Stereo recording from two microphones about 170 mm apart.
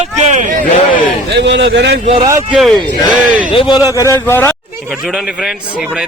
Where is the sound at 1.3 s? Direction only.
90° right.